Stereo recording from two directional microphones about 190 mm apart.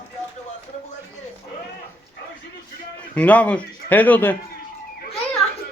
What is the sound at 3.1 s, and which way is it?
A man's voice, 5° left (ahead or behind).